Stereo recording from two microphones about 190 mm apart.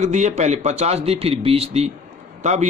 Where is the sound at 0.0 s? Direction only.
40° right (ahead or behind).